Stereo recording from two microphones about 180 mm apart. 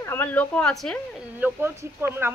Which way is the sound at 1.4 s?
10° right (ahead or behind).